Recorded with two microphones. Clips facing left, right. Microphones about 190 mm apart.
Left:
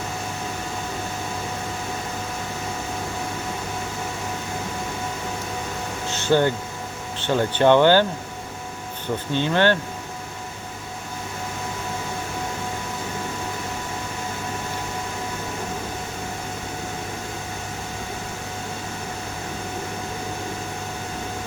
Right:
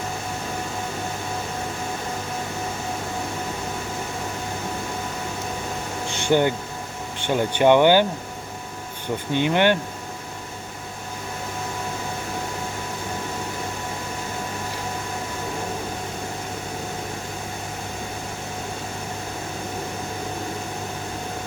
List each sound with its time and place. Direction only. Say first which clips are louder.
6.1 s a sound: even; 15° right (ahead or behind)
7.2 s speech: even; 15° right (ahead or behind)
9.3 s speech: right 1 dB; 15° right (ahead or behind)